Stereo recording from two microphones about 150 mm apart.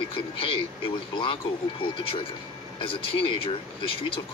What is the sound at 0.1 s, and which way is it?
Speech, 35° left (ahead or behind).